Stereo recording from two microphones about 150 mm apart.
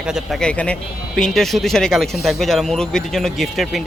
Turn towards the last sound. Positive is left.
turn(degrees=0)  # may be behind; listen again after turning